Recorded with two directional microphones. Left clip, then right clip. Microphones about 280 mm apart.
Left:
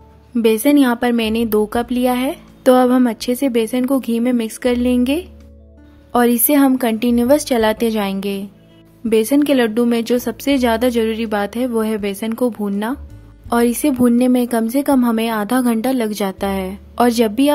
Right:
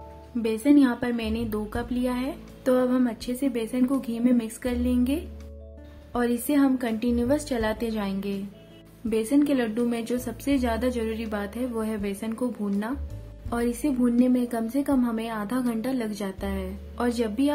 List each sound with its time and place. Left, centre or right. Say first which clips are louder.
0.4 s a woman's voice: left 8 dB; left